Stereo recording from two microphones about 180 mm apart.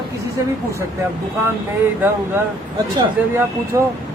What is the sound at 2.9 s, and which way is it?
Speech, 15° right (ahead or behind).